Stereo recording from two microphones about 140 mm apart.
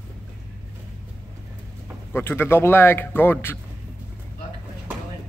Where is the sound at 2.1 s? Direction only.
15° left (ahead or behind).